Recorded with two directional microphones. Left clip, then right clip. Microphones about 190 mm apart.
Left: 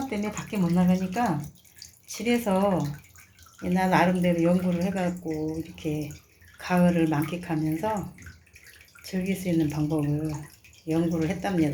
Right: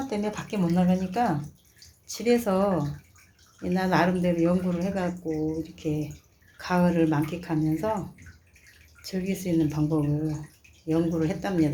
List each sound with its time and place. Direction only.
0.1 s speech: 10° right (ahead or behind)
9.0 s speech: 5° right (ahead or behind)